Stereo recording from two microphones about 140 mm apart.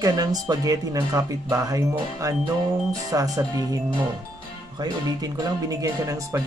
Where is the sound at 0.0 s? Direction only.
25° right (ahead or behind).